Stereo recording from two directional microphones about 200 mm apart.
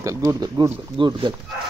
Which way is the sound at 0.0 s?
15° right (ahead or behind).